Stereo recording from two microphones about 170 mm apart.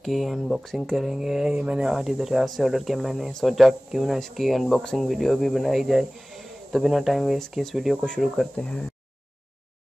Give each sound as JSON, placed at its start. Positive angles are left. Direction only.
{"t": 0.0, "sound": "speech", "side_deg": 0}